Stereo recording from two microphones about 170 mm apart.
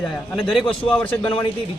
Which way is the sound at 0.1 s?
5° left (ahead or behind).